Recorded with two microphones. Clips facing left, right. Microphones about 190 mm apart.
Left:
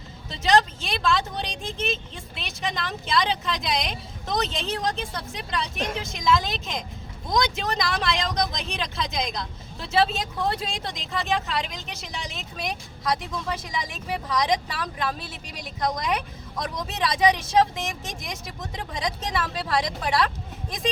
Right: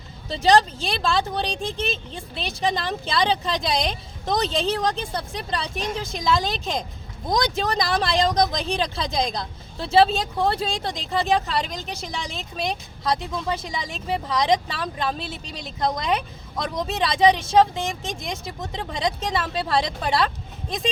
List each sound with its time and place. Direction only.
0.3 s speech: 35° right (ahead or behind)